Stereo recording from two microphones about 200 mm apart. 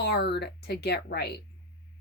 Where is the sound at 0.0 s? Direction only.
55° left (ahead or behind).